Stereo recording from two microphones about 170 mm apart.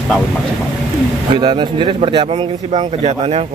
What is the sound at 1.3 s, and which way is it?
A man's voice, 30° right (ahead or behind).